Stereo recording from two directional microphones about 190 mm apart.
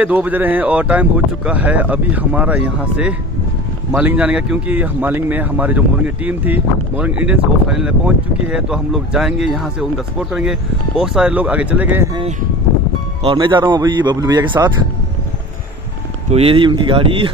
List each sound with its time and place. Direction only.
0.0 s speech: 10° right (ahead or behind)
13.2 s speech: 25° right (ahead or behind)
16.3 s speech: 30° right (ahead or behind)